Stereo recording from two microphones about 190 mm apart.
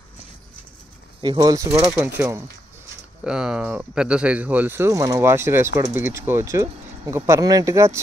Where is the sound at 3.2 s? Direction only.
5° right (ahead or behind).